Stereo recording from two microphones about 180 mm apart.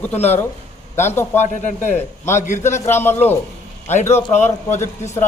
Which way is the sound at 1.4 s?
40° left (ahead or behind).